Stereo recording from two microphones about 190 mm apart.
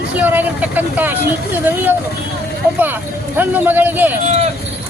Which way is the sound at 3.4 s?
10° right (ahead or behind).